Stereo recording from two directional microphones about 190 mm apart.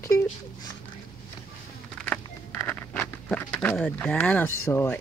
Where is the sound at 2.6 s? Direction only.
5° left (ahead or behind).